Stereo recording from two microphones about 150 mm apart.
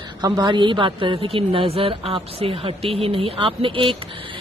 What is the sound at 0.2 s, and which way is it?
A woman's voice, 30° right (ahead or behind).